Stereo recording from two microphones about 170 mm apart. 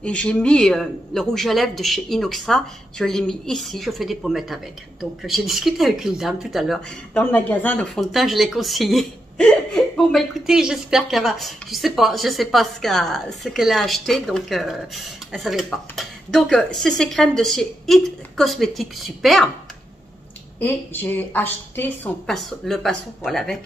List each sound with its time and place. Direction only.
0.0 s speech: 5° left (ahead or behind)
20.5 s a woman's voice: 10° left (ahead or behind)